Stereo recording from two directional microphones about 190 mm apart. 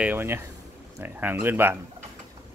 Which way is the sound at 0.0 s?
10° right (ahead or behind).